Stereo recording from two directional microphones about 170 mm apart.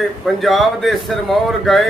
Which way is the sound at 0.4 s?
Centre (ahead or behind).